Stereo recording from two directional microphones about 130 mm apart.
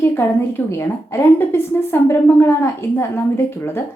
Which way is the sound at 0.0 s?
20° left (ahead or behind).